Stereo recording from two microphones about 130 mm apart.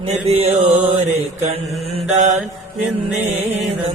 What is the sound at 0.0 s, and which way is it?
Mantra, 50° right (ahead or behind).